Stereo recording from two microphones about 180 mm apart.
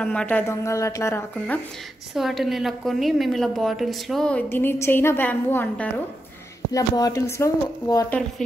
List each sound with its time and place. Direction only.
0.0 s a woman's voice: 5° left (ahead or behind)
2.1 s a woman's voice: centre (ahead or behind); by 8.1 s 15° left (ahead or behind)